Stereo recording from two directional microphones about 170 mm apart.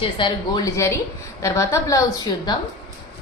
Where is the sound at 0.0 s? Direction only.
25° left (ahead or behind).